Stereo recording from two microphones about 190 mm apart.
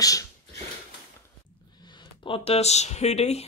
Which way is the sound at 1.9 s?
25° left (ahead or behind).